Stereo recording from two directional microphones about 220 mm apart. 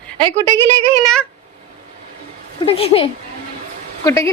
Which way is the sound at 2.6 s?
25° left (ahead or behind).